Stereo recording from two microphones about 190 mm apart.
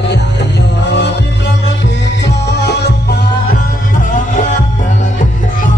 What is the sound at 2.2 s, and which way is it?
Music, 65° left (ahead or behind).